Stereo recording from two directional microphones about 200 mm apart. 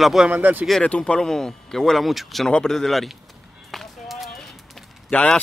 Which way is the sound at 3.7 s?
Centre (ahead or behind).